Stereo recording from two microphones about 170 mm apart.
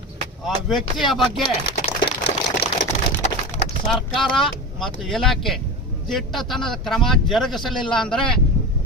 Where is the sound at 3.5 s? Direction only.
45° left (ahead or behind).